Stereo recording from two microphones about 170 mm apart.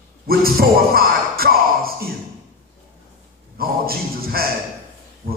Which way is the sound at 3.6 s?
60° right (ahead or behind).